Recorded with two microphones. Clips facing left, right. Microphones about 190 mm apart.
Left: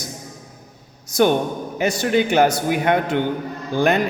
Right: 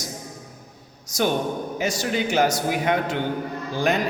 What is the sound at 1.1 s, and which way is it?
A man's voice, 55° left (ahead or behind).